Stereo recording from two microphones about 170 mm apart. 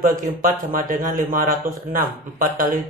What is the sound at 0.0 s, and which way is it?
Speech, 55° right (ahead or behind).